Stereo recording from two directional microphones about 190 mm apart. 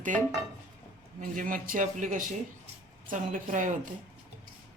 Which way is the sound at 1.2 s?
45° right (ahead or behind).